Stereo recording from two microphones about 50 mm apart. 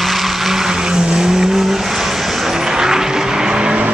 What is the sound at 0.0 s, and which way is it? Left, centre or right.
Vehicle, centre.